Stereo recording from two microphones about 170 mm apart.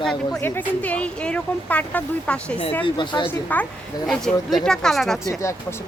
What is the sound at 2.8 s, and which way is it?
Speech, 30° left (ahead or behind).